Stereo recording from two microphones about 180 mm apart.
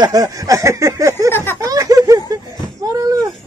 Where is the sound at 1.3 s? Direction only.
10° left (ahead or behind).